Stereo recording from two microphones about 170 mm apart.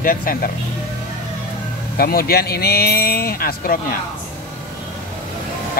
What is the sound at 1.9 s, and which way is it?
Speech, 60° left (ahead or behind).